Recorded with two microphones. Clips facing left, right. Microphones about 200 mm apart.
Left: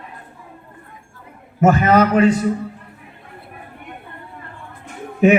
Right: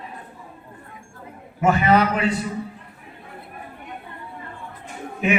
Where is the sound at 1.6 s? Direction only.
45° left (ahead or behind).